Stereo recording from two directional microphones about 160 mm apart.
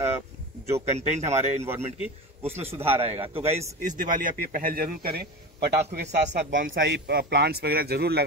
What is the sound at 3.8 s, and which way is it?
Speech, 60° right (ahead or behind).